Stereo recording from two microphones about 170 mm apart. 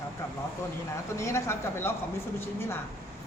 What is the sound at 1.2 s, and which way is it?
Speech, 15° left (ahead or behind).